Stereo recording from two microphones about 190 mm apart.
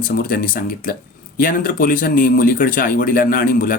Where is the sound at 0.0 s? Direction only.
50° left (ahead or behind).